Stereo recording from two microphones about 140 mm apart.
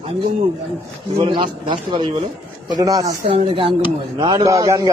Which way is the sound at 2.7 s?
25° right (ahead or behind).